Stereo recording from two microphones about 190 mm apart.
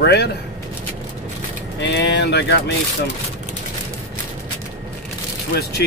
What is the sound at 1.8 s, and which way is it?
Speech, 65° left (ahead or behind).